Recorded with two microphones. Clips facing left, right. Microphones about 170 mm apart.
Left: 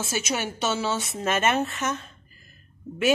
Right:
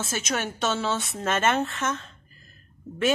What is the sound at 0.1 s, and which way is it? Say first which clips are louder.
A woman's voice: left 1 dB; 5° left (ahead or behind).